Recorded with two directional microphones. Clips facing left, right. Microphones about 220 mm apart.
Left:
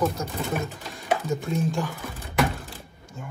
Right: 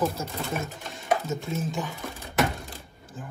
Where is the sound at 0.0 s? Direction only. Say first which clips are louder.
Left 2 dB; centre (ahead or behind).